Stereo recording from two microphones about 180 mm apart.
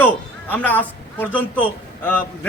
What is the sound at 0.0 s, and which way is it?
A man's voice, 10° left (ahead or behind).